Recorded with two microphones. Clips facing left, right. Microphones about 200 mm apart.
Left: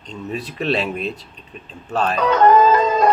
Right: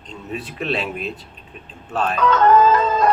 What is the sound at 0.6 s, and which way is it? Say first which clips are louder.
Speech: left 3 dB; centre (ahead or behind).